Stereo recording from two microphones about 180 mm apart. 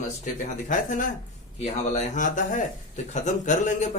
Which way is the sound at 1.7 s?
40° left (ahead or behind).